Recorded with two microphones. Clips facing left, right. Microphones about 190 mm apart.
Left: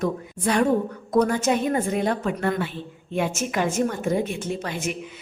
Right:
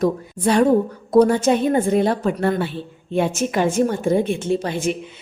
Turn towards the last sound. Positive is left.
turn(degrees=-30)  # may be behind; listen again after turning